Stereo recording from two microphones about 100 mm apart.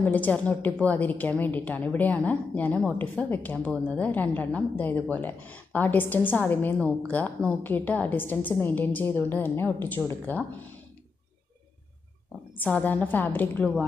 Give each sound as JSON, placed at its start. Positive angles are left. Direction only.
{"t": 0.0, "sound": "a woman's voice", "side_deg": 15}
{"t": 12.5, "sound": "a woman's voice", "side_deg": 20}